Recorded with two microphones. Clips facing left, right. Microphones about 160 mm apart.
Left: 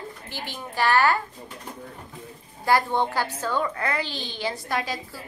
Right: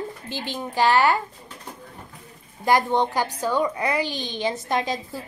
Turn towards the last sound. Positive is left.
turn(degrees=-20)  # may be behind; listen again after turning